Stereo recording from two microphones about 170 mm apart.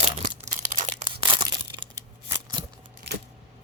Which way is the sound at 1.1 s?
30° right (ahead or behind).